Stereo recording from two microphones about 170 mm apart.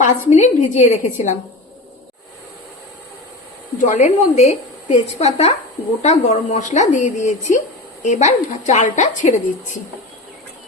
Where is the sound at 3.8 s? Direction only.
45° left (ahead or behind).